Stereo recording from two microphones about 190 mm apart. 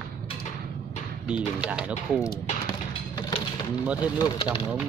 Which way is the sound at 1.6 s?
5° right (ahead or behind).